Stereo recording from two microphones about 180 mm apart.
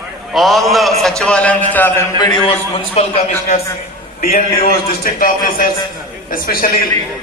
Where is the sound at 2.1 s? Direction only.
25° left (ahead or behind).